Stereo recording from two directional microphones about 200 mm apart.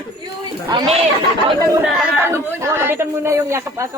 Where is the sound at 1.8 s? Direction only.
5° right (ahead or behind).